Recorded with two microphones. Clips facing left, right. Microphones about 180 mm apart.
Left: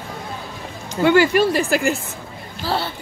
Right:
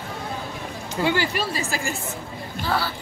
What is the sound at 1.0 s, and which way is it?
Speech, 55° left (ahead or behind).